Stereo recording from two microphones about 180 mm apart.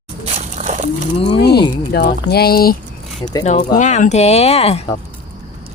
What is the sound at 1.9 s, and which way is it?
Speech, 60° left (ahead or behind).